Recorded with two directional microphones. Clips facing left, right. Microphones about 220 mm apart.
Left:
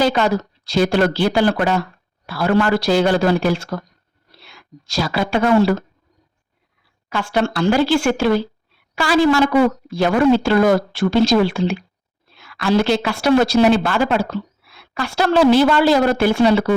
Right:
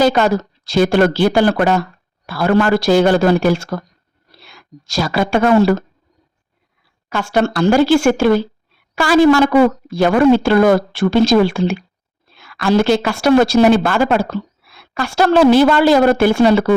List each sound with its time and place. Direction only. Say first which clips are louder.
0.0 s a woman's voice: right 3 dB; 45° right (ahead or behind)
7.1 s a woman's voice: right 3 dB; 45° right (ahead or behind)